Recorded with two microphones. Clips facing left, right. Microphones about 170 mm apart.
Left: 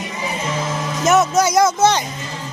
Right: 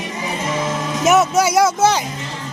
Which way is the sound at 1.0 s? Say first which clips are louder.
Right 1 dB; 10° right (ahead or behind).